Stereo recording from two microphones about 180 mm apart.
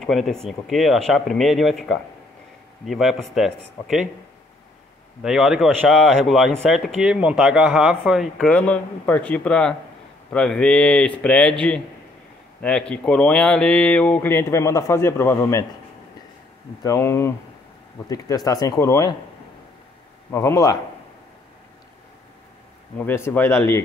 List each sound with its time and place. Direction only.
0.0 s speech: centre (ahead or behind)
5.2 s speech: centre (ahead or behind); by 15.6 s 15° left (ahead or behind)
16.8 s speech: 15° left (ahead or behind)
20.2 s speech: 15° left (ahead or behind)
22.9 s speech: 10° left (ahead or behind)